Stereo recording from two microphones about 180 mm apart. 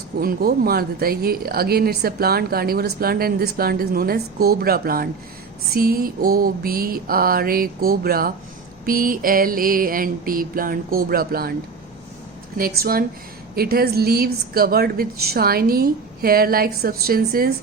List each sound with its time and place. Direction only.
0.2 s speech: 55° right (ahead or behind)
8.9 s mantra: 50° right (ahead or behind)
12.5 s speech: 55° right (ahead or behind)